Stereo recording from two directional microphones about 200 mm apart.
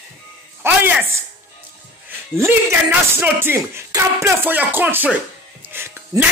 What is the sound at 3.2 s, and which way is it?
Speech, 10° right (ahead or behind).